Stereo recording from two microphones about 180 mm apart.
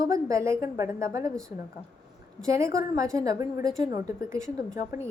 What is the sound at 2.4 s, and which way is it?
A woman's voice, 15° right (ahead or behind).